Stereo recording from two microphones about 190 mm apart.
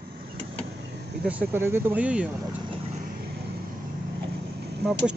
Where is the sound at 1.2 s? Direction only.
10° right (ahead or behind).